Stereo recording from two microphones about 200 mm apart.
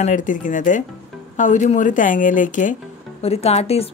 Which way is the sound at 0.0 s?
40° left (ahead or behind).